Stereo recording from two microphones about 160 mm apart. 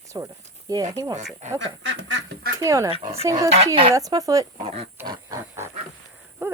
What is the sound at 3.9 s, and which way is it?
Speech, 20° right (ahead or behind).